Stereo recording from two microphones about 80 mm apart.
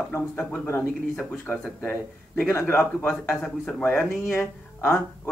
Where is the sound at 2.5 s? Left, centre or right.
Left.